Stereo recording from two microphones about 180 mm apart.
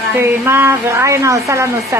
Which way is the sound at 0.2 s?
15° right (ahead or behind).